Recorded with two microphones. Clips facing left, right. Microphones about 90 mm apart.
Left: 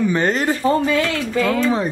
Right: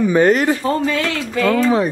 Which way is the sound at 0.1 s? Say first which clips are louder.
Right 5 dB; 5° right (ahead or behind).